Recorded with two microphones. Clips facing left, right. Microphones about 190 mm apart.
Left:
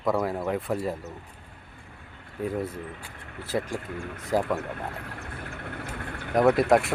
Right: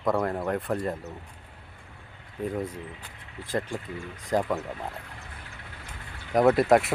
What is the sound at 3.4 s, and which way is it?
Speech, 5° left (ahead or behind).